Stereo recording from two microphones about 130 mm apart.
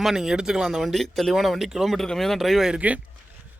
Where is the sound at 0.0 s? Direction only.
5° right (ahead or behind).